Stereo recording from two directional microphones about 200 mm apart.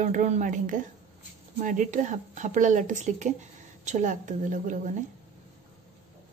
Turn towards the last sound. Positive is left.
turn(degrees=-40)  # may be behind; listen again after turning